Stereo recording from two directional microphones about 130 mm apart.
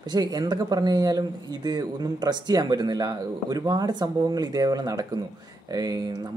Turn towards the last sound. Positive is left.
turn(degrees=-30)  # may be behind; listen again after turning